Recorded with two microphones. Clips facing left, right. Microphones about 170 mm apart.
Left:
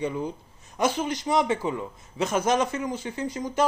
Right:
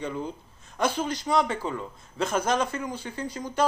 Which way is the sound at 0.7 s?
20° left (ahead or behind).